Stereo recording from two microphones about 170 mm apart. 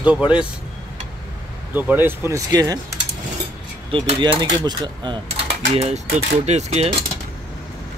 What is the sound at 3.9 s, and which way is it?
Speech, 30° right (ahead or behind).